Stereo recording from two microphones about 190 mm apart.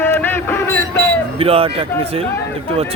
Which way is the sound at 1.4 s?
30° right (ahead or behind).